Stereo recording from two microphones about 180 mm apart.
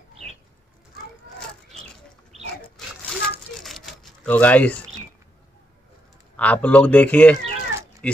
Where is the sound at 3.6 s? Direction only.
Centre (ahead or behind).